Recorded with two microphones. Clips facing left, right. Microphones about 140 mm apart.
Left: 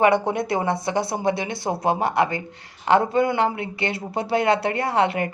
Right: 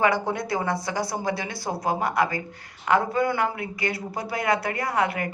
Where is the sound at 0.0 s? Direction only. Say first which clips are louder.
Left 4 dB; 20° left (ahead or behind).